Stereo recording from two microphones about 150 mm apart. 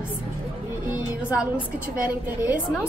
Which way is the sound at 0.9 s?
10° right (ahead or behind).